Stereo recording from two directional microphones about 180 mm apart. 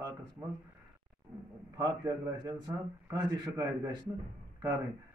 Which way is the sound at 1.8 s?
20° right (ahead or behind).